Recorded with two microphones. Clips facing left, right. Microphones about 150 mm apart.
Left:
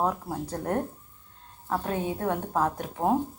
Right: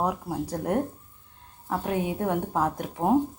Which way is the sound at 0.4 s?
10° right (ahead or behind).